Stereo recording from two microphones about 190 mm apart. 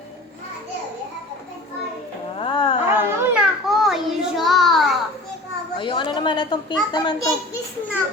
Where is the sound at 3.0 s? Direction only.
10° right (ahead or behind).